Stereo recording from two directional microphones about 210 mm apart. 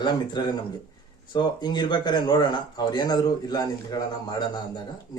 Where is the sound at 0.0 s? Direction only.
20° left (ahead or behind).